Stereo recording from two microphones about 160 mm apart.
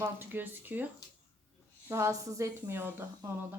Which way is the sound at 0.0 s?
15° right (ahead or behind).